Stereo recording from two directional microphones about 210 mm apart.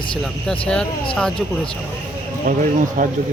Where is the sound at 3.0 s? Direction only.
40° right (ahead or behind).